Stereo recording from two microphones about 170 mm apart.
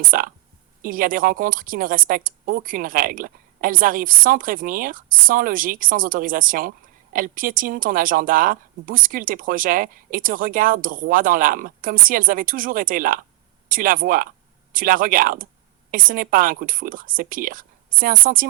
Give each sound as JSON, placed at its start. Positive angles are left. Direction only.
{"t": 0.0, "sound": "a woman's voice", "side_deg": -55}